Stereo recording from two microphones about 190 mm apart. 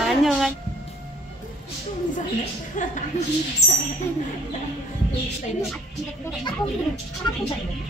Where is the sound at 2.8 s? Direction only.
40° left (ahead or behind).